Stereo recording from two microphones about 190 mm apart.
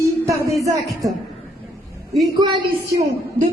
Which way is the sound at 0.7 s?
20° right (ahead or behind).